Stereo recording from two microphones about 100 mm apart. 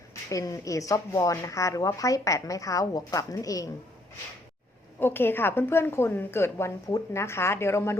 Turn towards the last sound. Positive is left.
turn(degrees=25)  # may be behind; listen again after turning